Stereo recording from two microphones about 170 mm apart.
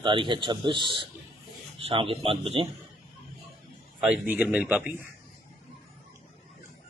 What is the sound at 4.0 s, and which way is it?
Speech, 5° right (ahead or behind).